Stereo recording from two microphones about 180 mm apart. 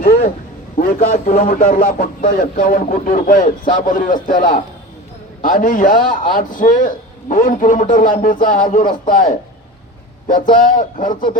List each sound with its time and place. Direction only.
0.8 s a man's voice: 50° left (ahead or behind)
10.5 s a man's voice: 50° left (ahead or behind)